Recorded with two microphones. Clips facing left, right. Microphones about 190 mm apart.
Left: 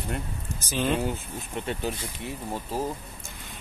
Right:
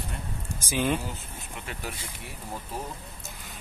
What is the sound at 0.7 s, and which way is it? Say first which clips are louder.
Speech: even; 10° right (ahead or behind).